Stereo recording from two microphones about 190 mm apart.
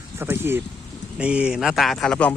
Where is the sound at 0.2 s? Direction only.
10° right (ahead or behind).